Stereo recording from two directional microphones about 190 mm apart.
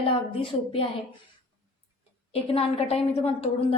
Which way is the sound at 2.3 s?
30° left (ahead or behind).